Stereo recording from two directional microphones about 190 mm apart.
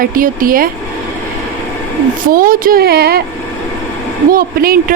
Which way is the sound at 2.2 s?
50° right (ahead or behind).